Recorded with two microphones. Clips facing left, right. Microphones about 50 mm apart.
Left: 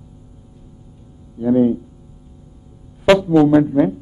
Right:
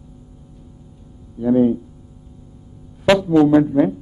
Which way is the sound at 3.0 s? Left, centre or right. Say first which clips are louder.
Left 1 dB; centre.